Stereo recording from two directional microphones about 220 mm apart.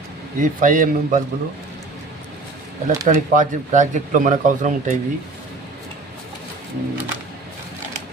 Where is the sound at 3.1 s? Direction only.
35° right (ahead or behind).